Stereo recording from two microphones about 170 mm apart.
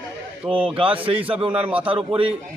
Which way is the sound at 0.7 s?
30° right (ahead or behind).